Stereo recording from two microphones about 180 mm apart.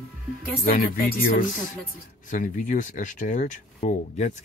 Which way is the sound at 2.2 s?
45° left (ahead or behind).